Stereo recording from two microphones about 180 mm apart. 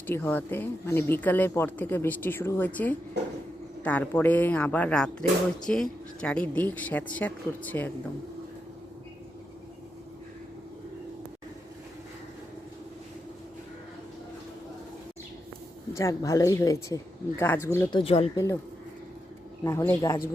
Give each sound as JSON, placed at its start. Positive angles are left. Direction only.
{"t": 0.1, "sound": "speech", "side_deg": 10}
{"t": 16.0, "sound": "speech", "side_deg": 20}
{"t": 17.9, "sound": "speech", "side_deg": 30}
{"t": 19.6, "sound": "speech", "side_deg": 10}